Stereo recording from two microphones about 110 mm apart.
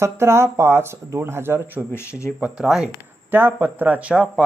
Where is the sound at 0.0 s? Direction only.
25° right (ahead or behind).